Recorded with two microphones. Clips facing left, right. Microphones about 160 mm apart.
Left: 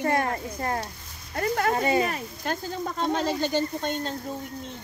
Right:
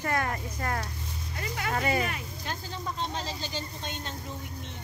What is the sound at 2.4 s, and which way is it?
Speech, 55° left (ahead or behind).